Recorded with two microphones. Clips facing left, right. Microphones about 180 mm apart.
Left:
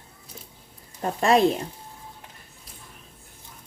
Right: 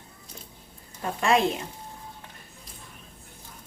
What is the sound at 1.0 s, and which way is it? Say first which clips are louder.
Speech: left 4 dB; 35° left (ahead or behind).